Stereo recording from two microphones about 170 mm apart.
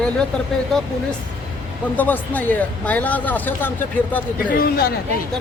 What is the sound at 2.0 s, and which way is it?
Speech, 10° left (ahead or behind).